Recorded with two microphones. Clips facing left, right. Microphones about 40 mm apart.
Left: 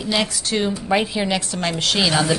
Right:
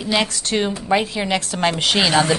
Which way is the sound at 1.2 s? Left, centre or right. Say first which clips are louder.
Even; centre.